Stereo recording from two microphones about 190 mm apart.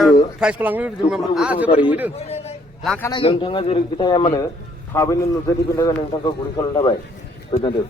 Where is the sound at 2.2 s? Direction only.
35° left (ahead or behind).